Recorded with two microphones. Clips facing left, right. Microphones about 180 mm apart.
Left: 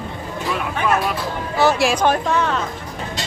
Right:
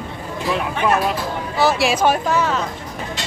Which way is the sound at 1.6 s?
Centre (ahead or behind).